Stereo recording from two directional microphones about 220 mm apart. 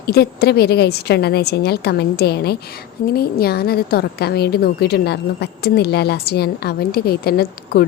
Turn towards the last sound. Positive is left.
turn(degrees=45)  # may be behind; listen again after turning